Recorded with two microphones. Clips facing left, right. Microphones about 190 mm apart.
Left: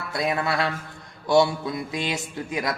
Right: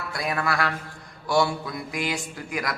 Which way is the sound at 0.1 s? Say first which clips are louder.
Left 3 dB; 25° left (ahead or behind).